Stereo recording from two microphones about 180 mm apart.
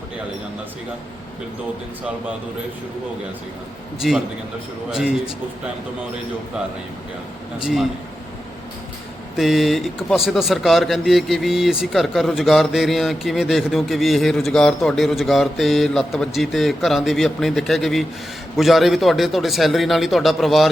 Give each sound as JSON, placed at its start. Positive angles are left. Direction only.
{"t": 4.0, "sound": "speech", "side_deg": 0}
{"t": 7.6, "sound": "speech", "side_deg": 0}
{"t": 9.3, "sound": "speech", "side_deg": 0}